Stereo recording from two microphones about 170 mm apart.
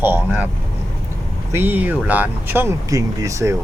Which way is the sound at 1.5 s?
10° right (ahead or behind).